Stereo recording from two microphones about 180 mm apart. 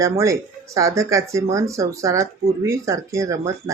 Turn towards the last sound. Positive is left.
turn(degrees=-15)  # may be behind; listen again after turning